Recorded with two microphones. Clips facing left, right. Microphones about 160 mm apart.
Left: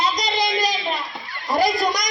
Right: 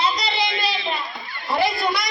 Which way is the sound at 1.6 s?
40° left (ahead or behind).